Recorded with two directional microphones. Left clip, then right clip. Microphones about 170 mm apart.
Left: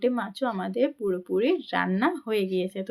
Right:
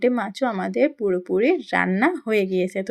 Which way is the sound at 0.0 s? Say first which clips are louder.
Right 5 dB; 30° right (ahead or behind).